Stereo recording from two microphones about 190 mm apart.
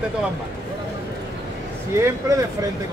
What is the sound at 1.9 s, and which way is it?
Speech, 15° right (ahead or behind).